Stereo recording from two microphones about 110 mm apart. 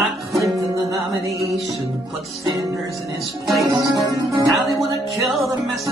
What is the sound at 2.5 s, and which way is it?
Speech, 30° right (ahead or behind).